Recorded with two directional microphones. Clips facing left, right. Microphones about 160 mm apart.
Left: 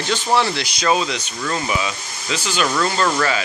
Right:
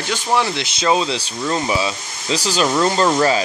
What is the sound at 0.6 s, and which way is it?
Speech, 25° right (ahead or behind).